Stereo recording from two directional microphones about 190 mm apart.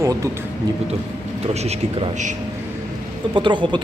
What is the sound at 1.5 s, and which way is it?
Speech, 35° right (ahead or behind).